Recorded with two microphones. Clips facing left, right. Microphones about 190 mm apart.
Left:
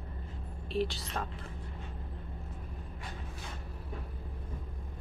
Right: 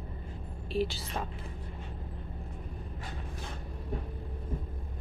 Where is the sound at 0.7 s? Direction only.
Centre (ahead or behind).